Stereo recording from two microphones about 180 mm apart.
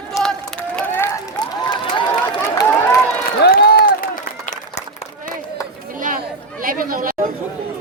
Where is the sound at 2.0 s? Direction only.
25° left (ahead or behind).